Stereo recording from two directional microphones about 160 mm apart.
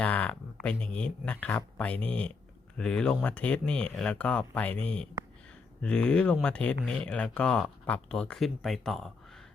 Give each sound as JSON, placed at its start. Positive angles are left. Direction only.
{"t": 0.0, "sound": "speech", "side_deg": 10}